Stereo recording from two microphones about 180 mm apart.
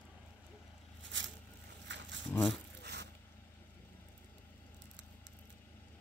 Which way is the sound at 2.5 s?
70° right (ahead or behind).